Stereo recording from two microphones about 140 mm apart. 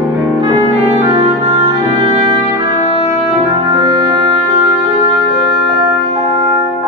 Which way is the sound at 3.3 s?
45° right (ahead or behind).